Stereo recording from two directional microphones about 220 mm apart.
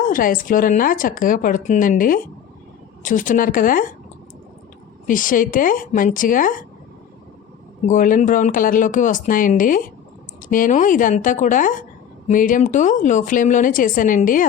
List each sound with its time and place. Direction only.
0.0 s a woman's voice: 40° left (ahead or behind)
5.0 s a woman's voice: 40° left (ahead or behind)
7.9 s a woman's voice: 35° left (ahead or behind)